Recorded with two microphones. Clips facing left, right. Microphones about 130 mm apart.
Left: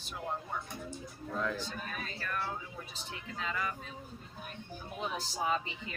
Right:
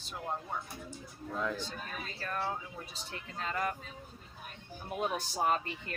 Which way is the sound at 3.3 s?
45° right (ahead or behind).